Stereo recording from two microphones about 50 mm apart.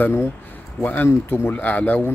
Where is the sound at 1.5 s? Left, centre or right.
Left.